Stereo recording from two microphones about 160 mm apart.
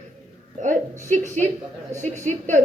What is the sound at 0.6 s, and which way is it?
A woman's voice, 50° right (ahead or behind).